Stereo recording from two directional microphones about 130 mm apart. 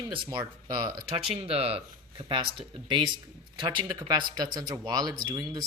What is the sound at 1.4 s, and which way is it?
Speech, 50° right (ahead or behind).